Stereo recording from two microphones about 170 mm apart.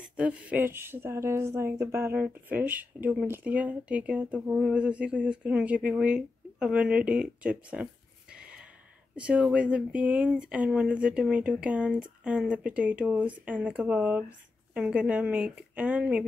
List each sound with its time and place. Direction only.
0.1 s a woman's voice: 10° right (ahead or behind)